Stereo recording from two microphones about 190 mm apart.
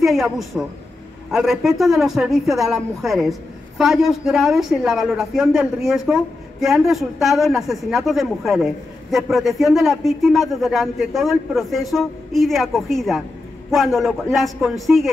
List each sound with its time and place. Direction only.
0.0 s speech: centre (ahead or behind)